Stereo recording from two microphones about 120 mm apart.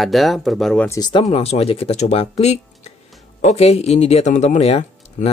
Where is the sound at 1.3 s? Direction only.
60° left (ahead or behind).